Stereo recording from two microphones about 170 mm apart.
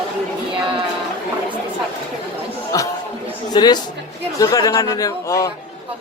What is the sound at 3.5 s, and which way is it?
A man's voice, 25° left (ahead or behind).